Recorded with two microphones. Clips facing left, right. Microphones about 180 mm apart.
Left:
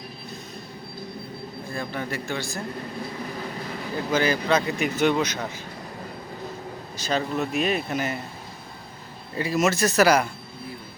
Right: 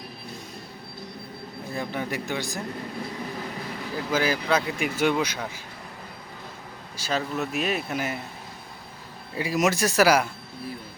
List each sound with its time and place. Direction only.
1.7 s speech: 15° right (ahead or behind)
3.9 s speech: 5° right (ahead or behind)
6.9 s speech: 5° right (ahead or behind)
9.3 s speech: 10° right (ahead or behind)